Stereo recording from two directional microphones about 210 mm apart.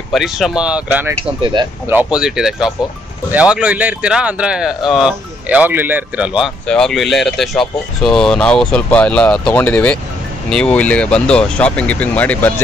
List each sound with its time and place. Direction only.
0.1 s speech: centre (ahead or behind)
1.4 s speech: 20° right (ahead or behind)
1.9 s speech: 5° right (ahead or behind)